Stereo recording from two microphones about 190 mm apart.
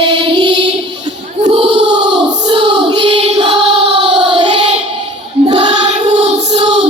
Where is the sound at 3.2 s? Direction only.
30° right (ahead or behind).